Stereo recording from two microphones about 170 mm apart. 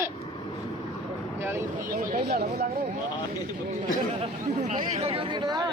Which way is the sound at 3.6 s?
40° right (ahead or behind).